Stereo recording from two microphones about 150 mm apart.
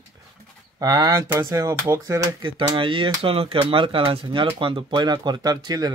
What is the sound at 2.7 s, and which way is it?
Speech, 35° right (ahead or behind).